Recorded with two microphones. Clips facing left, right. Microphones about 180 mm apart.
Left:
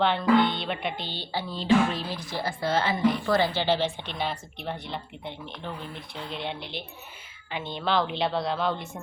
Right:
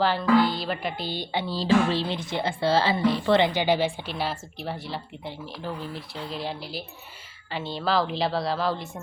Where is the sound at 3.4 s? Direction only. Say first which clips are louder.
Right 2 dB; 15° right (ahead or behind).